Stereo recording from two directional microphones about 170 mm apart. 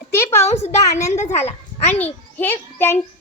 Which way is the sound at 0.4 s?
40° left (ahead or behind).